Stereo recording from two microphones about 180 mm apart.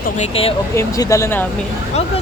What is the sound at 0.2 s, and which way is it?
Speech, 30° left (ahead or behind).